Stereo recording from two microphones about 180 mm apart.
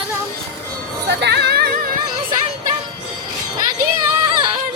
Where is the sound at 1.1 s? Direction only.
65° right (ahead or behind).